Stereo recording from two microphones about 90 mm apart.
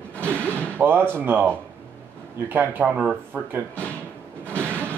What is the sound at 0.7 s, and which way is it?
Speech, 25° right (ahead or behind).